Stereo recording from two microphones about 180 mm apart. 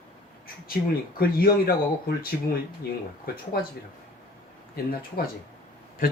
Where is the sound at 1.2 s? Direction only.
55° left (ahead or behind).